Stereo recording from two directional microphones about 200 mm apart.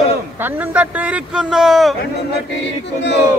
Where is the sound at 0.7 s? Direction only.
5° right (ahead or behind).